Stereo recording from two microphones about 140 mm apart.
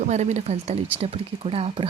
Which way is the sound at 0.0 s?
55° right (ahead or behind).